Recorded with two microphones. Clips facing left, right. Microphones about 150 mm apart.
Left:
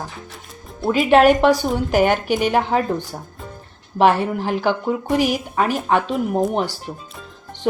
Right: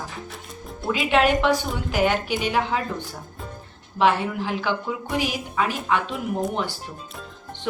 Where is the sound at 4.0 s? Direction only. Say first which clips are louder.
Left 5 dB; 50° left (ahead or behind).